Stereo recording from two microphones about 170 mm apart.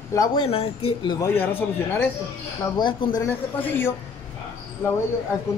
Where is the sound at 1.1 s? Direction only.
15° left (ahead or behind).